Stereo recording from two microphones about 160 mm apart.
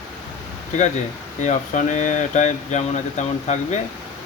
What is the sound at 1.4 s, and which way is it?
Speech, 50° left (ahead or behind).